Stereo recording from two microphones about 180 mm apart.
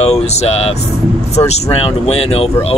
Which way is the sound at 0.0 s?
35° left (ahead or behind).